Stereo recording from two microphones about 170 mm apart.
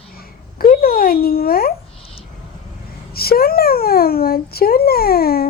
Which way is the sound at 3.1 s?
65° left (ahead or behind).